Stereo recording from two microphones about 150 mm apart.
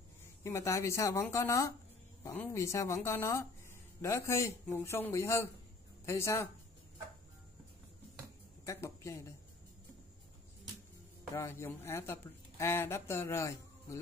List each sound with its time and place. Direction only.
0.4 s speech: 20° left (ahead or behind)
8.6 s speech: 20° left (ahead or behind)
11.3 s speech: 15° left (ahead or behind)